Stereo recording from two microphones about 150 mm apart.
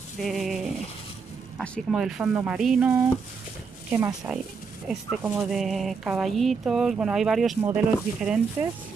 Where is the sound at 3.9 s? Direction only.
20° right (ahead or behind).